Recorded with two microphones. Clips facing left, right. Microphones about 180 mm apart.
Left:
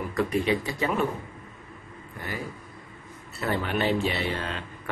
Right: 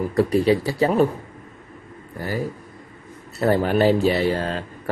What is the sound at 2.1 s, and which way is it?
A man's voice, 35° right (ahead or behind).